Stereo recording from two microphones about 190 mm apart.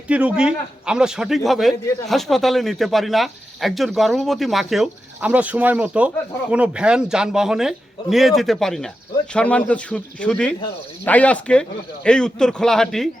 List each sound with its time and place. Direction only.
0.1 s speech: 5° right (ahead or behind)